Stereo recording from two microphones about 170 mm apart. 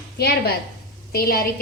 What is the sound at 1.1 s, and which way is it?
Speech, 60° left (ahead or behind).